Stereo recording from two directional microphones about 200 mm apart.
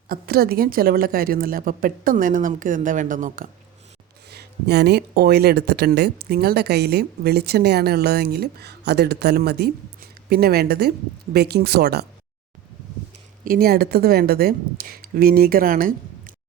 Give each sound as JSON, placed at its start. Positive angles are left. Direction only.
{"t": 0.1, "sound": "speech", "side_deg": -50}
{"t": 4.3, "sound": "speech", "side_deg": -55}
{"t": 13.4, "sound": "speech", "side_deg": -45}